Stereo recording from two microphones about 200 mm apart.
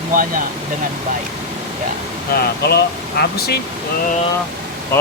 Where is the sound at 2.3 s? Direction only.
50° left (ahead or behind).